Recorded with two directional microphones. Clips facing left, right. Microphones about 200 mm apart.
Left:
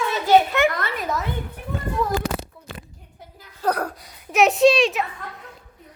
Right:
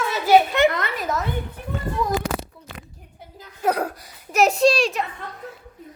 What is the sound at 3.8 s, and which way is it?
Speech, centre (ahead or behind).